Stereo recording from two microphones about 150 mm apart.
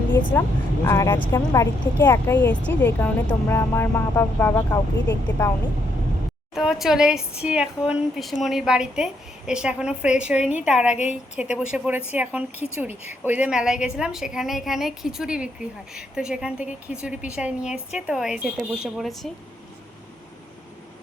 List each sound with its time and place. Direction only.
0.3 s a woman's voice: 15° left (ahead or behind)
6.5 s a woman's voice: centre (ahead or behind)